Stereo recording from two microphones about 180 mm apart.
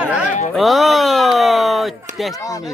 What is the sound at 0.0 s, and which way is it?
Speech, 5° right (ahead or behind).